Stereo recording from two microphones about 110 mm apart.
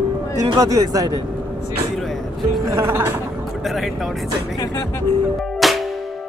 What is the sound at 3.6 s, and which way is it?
Speech, centre (ahead or behind).